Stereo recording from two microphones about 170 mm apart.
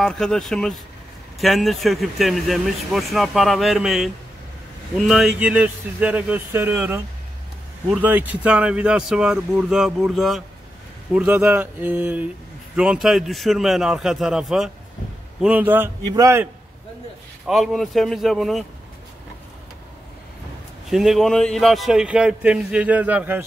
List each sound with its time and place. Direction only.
0.0 s speech: 5° left (ahead or behind)
16.0 s a man's voice: 20° right (ahead or behind)
17.5 s speech: centre (ahead or behind)
20.9 s speech: centre (ahead or behind)